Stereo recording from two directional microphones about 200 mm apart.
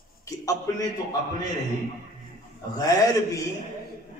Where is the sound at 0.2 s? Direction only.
15° left (ahead or behind).